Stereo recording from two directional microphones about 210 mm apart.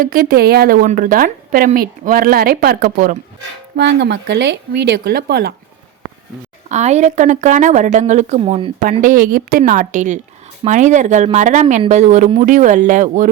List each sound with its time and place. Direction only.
0.0 s a woman's voice: 45° right (ahead or behind)
3.8 s a woman's voice: 55° right (ahead or behind)
6.7 s speech: 35° right (ahead or behind)